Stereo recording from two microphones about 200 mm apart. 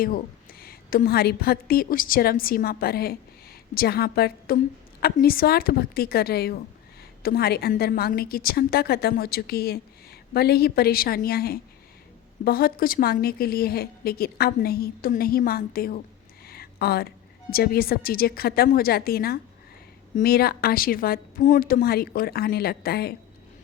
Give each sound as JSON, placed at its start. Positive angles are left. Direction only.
{"t": 0.6, "sound": "a woman's voice", "side_deg": 45}
{"t": 16.5, "sound": "a sound", "side_deg": 50}
{"t": 17.5, "sound": "a woman's voice", "side_deg": 50}